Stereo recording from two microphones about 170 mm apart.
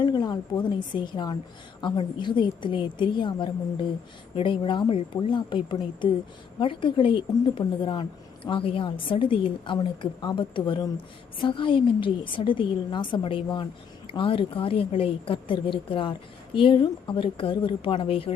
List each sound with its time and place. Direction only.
0.0 s a woman's voice: 25° left (ahead or behind)